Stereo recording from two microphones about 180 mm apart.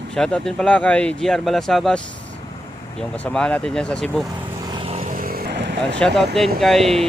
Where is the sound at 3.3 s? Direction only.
5° left (ahead or behind).